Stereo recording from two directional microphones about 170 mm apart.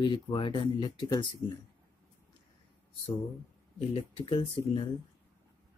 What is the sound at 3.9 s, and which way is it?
Speech, 30° left (ahead or behind).